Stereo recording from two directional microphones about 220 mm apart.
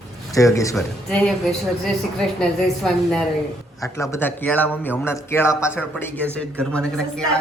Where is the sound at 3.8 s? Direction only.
15° left (ahead or behind).